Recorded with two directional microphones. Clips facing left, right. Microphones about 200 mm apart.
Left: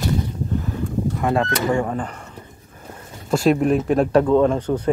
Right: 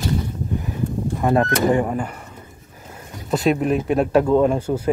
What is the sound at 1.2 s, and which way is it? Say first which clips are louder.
Speech: right 4 dB; 20° right (ahead or behind).